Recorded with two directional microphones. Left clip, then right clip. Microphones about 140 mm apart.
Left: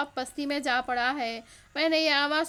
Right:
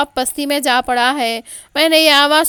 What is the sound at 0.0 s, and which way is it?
A woman's voice, 55° right (ahead or behind).